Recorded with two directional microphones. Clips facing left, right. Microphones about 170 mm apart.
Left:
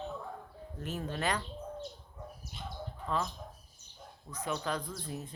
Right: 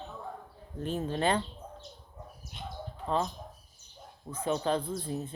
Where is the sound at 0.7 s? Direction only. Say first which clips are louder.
Right 6 dB; 25° right (ahead or behind).